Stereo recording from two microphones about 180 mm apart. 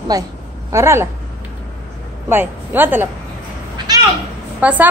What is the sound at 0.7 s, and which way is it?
Speech, 15° right (ahead or behind).